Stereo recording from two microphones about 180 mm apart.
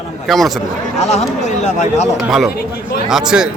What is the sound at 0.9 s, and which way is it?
Speech, 35° left (ahead or behind).